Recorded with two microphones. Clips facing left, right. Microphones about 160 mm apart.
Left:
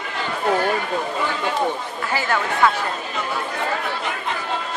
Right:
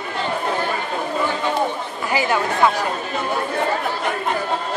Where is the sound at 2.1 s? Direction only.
15° right (ahead or behind).